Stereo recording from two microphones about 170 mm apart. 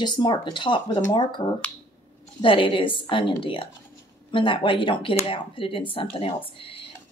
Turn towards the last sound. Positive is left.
turn(degrees=30)  # may be behind; listen again after turning